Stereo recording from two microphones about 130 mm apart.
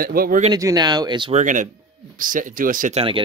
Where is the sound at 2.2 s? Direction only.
90° right.